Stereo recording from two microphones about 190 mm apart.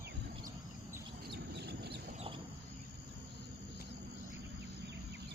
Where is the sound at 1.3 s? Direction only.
60° right (ahead or behind).